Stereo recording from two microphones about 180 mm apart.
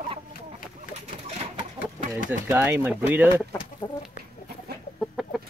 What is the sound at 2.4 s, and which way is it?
Speech, 10° right (ahead or behind).